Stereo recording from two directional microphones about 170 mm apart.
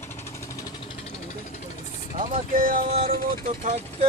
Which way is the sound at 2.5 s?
55° right (ahead or behind).